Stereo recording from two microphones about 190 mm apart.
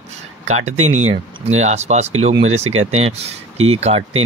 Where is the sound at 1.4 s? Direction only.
35° right (ahead or behind).